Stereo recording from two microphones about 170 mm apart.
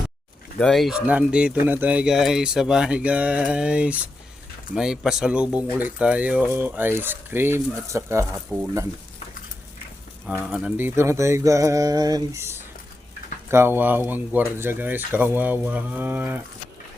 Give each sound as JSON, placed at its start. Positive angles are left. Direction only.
{"t": 0.6, "sound": "speech", "side_deg": 0}
{"t": 10.2, "sound": "speech", "side_deg": -5}